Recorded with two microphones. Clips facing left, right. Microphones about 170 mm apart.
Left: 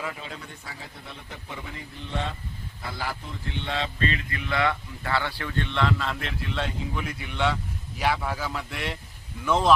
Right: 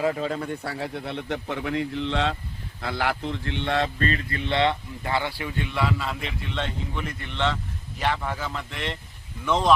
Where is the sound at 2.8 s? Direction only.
75° right (ahead or behind).